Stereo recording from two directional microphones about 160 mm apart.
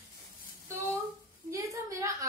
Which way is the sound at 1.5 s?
20° right (ahead or behind).